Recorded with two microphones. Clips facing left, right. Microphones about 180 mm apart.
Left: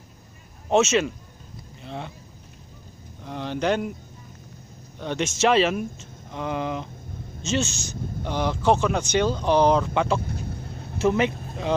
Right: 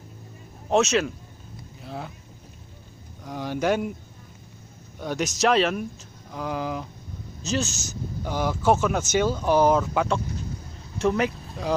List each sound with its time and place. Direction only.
0.7 s speech: centre (ahead or behind)
1.8 s a sound: 5° right (ahead or behind)
3.3 s a sound: 5° right (ahead or behind)
5.0 s speech: centre (ahead or behind)
10.2 s vehicle: 55° left (ahead or behind)
11.0 s speech: centre (ahead or behind)